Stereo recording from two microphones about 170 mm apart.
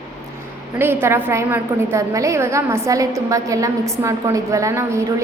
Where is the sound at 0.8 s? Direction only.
15° right (ahead or behind).